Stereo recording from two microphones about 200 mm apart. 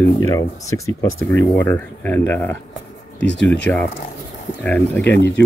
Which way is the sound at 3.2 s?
60° left (ahead or behind).